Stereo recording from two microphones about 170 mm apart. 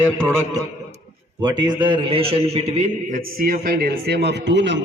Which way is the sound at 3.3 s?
55° right (ahead or behind).